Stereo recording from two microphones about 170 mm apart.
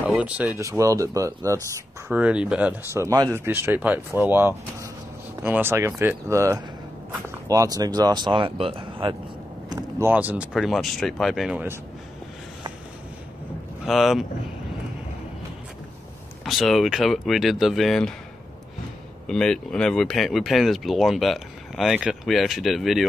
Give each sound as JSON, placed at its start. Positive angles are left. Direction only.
{"t": 0.0, "sound": "speech", "side_deg": -5}
{"t": 2.0, "sound": "speech", "side_deg": -5}
{"t": 2.9, "sound": "speech", "side_deg": -20}
{"t": 9.7, "sound": "speech", "side_deg": -20}
{"t": 13.8, "sound": "speech", "side_deg": 0}
{"t": 16.4, "sound": "speech", "side_deg": 0}
{"t": 19.2, "sound": "speech", "side_deg": 5}